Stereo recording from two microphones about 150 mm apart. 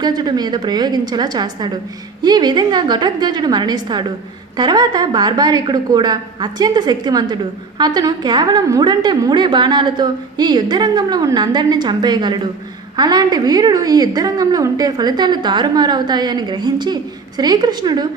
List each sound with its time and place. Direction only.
0.0 s a woman's voice: 30° right (ahead or behind)